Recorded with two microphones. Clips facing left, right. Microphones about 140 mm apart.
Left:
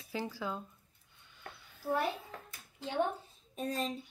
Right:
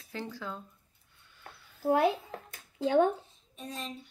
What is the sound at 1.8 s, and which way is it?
Speech, 80° right.